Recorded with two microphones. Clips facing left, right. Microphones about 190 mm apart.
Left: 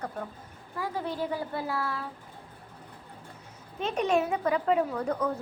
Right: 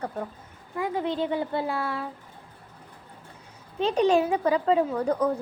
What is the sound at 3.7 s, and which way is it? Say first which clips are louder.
Speech: right 5 dB; 30° right (ahead or behind).